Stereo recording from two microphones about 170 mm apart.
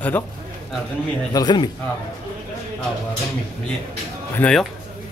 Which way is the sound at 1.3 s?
25° left (ahead or behind).